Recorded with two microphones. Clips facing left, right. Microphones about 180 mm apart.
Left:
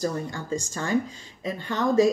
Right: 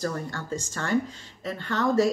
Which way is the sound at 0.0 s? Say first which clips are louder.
Left 2 dB; 15° left (ahead or behind).